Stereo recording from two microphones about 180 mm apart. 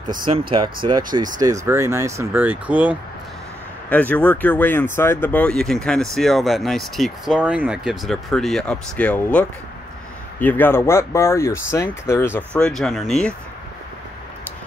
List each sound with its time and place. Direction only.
0.8 s speech: 25° right (ahead or behind); by 3.0 s 10° right (ahead or behind)
3.9 s speech: 10° left (ahead or behind)